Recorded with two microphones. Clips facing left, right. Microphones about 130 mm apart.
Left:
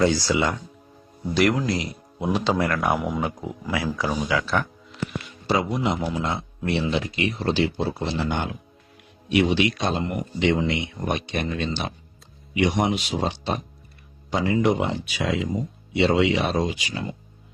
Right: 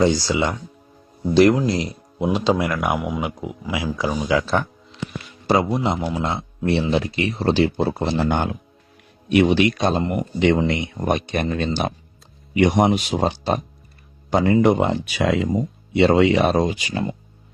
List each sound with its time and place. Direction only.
0.0 s speech: 20° right (ahead or behind); by 3.2 s centre (ahead or behind)
3.2 s speech: 15° right (ahead or behind)
4.3 s speech: 25° right (ahead or behind)
5.5 s speech: 35° right (ahead or behind)